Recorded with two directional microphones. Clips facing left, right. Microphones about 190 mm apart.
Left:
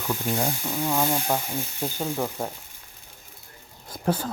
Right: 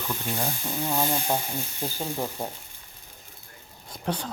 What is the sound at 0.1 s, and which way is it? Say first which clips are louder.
Speech: left 5 dB; 15° left (ahead or behind).